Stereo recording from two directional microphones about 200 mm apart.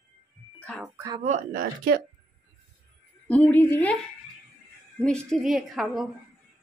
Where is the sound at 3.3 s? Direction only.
5° left (ahead or behind).